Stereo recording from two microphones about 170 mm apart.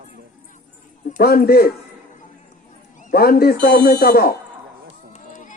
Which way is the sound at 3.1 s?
60° left (ahead or behind).